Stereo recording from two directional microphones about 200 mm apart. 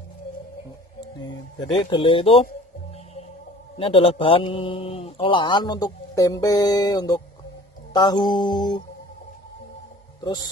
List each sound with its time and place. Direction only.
1.9 s speech: 25° left (ahead or behind)
3.7 s speech: 25° left (ahead or behind)
10.2 s speech: 20° left (ahead or behind)